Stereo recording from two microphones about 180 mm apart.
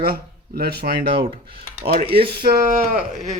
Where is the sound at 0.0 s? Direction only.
55° right (ahead or behind).